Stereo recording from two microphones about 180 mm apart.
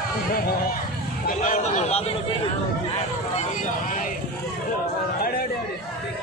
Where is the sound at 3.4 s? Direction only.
45° left (ahead or behind).